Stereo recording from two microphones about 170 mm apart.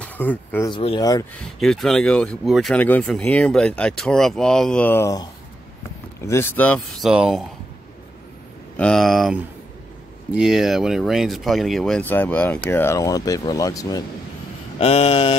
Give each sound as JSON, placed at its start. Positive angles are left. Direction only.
{"t": 0.0, "sound": "speech", "side_deg": 10}
{"t": 0.7, "sound": "speech", "side_deg": 30}
{"t": 1.3, "sound": "speech", "side_deg": 5}
{"t": 7.1, "sound": "speech", "side_deg": -5}
{"t": 8.7, "sound": "speech", "side_deg": 5}
{"t": 14.8, "sound": "mantra", "side_deg": 35}